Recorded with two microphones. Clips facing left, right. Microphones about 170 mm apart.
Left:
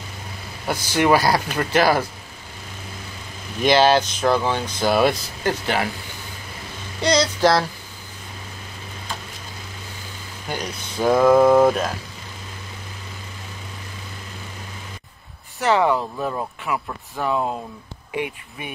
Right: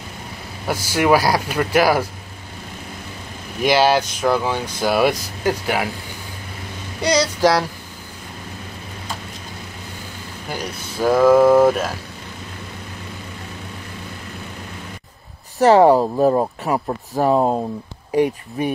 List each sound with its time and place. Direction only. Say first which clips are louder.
0.7 s speech: right 1 dB; 10° right (ahead or behind)
3.6 s speech: even; 10° right (ahead or behind)
7.0 s speech: right 1 dB; 10° right (ahead or behind)
10.5 s speech: even; 5° right (ahead or behind)
15.6 s speech: right 7 dB; 40° right (ahead or behind)